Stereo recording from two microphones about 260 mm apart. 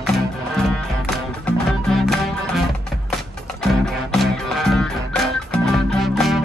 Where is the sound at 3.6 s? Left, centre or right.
Centre.